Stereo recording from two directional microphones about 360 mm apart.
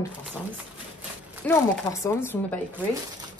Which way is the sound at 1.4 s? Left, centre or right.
Centre.